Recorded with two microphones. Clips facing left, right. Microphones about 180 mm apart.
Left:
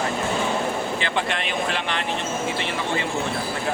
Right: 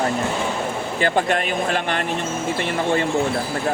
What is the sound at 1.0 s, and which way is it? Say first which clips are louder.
Speech: right 6 dB; 45° right (ahead or behind).